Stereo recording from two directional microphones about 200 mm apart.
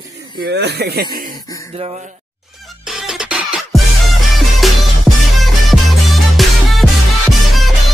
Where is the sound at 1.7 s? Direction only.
30° right (ahead or behind).